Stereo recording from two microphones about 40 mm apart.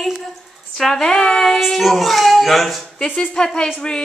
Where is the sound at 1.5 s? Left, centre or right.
Centre.